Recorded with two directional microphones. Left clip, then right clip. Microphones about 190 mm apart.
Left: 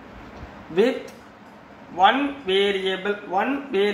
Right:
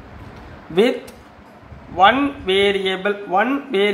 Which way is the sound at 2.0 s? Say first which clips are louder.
Right 4 dB; 35° right (ahead or behind).